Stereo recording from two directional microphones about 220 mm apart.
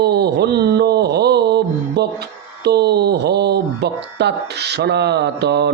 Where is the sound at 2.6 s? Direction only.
50° right (ahead or behind).